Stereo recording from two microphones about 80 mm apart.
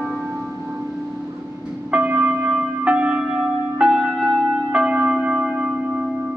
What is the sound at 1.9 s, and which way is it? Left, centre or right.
Church bell, right.